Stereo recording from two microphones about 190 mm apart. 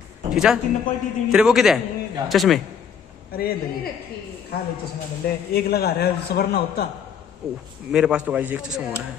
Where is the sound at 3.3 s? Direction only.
55° left (ahead or behind).